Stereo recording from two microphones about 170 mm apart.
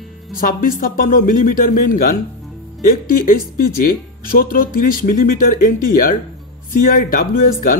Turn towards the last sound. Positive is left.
turn(degrees=55)  # may be behind; listen again after turning